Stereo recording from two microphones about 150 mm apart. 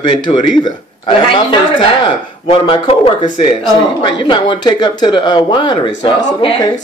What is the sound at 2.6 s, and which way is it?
A man's voice, 35° left (ahead or behind).